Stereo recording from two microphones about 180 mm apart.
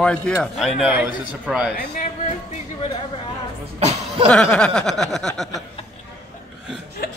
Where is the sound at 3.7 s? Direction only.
35° right (ahead or behind).